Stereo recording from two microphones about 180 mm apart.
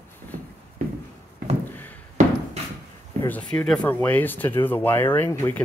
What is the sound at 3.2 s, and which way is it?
Speech, 10° left (ahead or behind).